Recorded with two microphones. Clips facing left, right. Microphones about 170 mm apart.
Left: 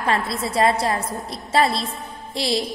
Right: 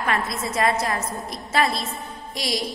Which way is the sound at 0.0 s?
30° left (ahead or behind).